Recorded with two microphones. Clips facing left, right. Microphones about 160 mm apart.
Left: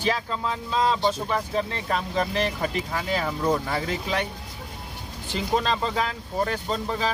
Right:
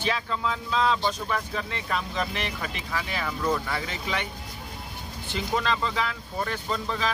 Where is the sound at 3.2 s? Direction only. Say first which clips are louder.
Left 1 dB; 25° left (ahead or behind).